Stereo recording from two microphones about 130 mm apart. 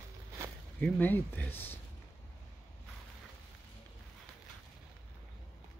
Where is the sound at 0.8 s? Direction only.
10° left (ahead or behind).